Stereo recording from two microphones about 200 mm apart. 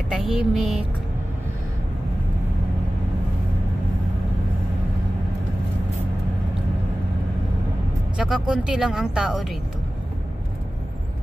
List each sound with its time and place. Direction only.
0.1 s speech: 5° right (ahead or behind)
8.2 s speech: 5° right (ahead or behind)